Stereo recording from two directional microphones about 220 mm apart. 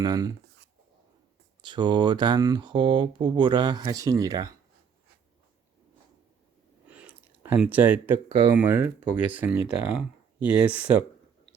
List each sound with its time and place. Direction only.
0.0 s speech: 15° right (ahead or behind)
1.6 s speech: 20° right (ahead or behind)
6.8 s a sound: 5° right (ahead or behind)
8.5 s speech: 5° right (ahead or behind)